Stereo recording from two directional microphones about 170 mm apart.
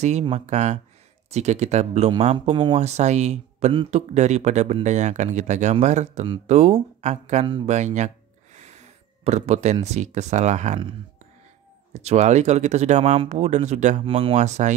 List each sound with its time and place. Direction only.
0.2 s speech: 40° right (ahead or behind)
11.9 s speech: 40° right (ahead or behind)